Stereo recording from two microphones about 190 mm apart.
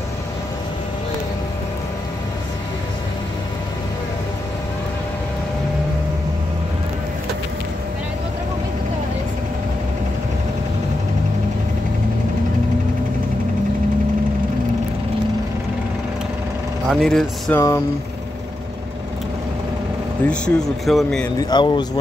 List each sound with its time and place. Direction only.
16.8 s speech: centre (ahead or behind)
17.6 s speech: 15° left (ahead or behind)
20.2 s speech: 5° left (ahead or behind)
21.4 s speech: 20° left (ahead or behind)